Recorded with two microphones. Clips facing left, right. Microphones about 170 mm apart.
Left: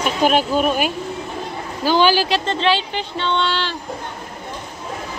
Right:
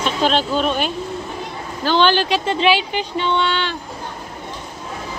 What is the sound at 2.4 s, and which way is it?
Speech, 10° right (ahead or behind).